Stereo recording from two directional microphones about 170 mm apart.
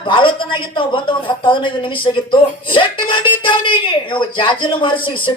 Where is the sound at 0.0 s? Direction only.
30° left (ahead or behind).